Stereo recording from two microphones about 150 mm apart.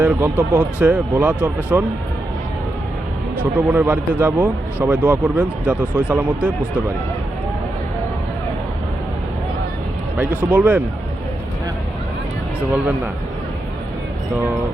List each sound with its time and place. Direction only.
0.0 s speech: 10° right (ahead or behind)
3.4 s speech: 10° right (ahead or behind)
10.2 s speech: 5° right (ahead or behind)
12.5 s speech: 10° right (ahead or behind)